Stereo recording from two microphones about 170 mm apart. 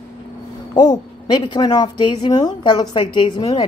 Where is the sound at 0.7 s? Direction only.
25° left (ahead or behind).